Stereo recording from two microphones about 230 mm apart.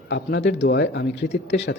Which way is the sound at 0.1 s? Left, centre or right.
Left.